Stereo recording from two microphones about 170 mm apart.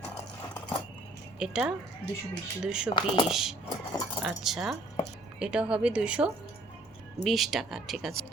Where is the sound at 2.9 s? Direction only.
30° left (ahead or behind).